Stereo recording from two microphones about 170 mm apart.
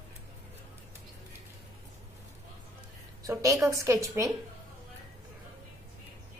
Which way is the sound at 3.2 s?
20° right (ahead or behind).